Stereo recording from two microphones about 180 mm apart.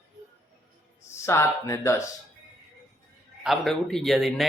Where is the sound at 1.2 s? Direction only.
15° left (ahead or behind).